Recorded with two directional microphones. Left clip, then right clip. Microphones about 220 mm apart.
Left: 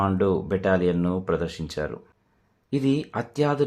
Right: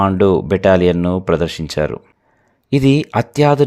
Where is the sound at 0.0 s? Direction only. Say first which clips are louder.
Right 10 dB; 35° right (ahead or behind).